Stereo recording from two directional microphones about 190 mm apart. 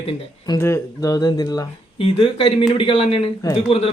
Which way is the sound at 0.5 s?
15° left (ahead or behind).